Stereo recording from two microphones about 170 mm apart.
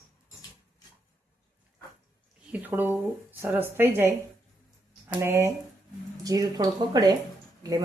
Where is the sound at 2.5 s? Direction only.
10° right (ahead or behind).